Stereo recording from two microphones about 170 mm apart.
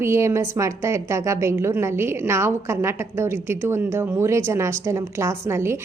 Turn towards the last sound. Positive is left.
turn(degrees=-15)  # may be behind; listen again after turning